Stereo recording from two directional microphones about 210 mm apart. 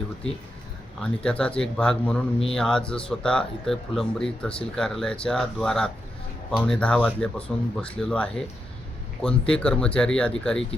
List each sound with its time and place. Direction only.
0.9 s speech: 5° left (ahead or behind)